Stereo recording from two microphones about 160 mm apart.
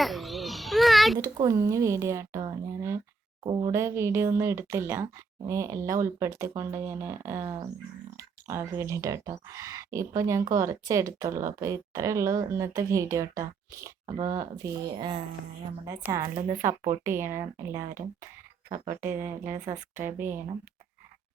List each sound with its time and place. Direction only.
0.0 s a sound: centre (ahead or behind)
1.2 s speech: 20° right (ahead or behind)
16.0 s speech: 15° right (ahead or behind)
16.6 s speech: 50° right (ahead or behind)
17.0 s speech: 15° right (ahead or behind)
19.0 s speech: 15° right (ahead or behind)